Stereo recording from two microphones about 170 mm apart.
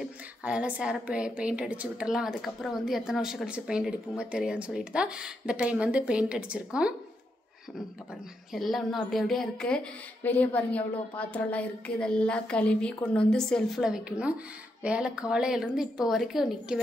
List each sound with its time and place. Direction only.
0.0 s a woman's voice: 5° right (ahead or behind)
8.5 s a woman's voice: centre (ahead or behind)